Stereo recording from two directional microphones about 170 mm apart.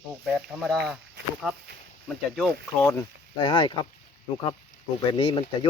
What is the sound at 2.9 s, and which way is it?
Speech, 25° left (ahead or behind).